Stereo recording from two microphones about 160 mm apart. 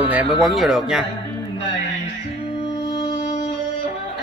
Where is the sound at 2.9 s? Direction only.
30° left (ahead or behind).